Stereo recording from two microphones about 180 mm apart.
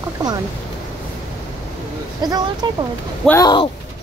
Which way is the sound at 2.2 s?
20° right (ahead or behind).